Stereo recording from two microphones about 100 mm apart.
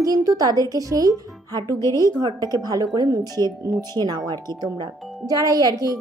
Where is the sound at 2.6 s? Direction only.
40° right (ahead or behind).